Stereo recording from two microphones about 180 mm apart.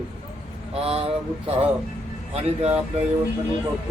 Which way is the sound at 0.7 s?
30° right (ahead or behind).